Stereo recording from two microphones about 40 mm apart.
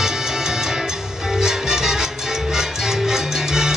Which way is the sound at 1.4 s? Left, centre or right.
Centre.